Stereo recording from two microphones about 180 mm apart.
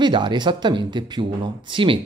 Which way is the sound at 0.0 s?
25° right (ahead or behind).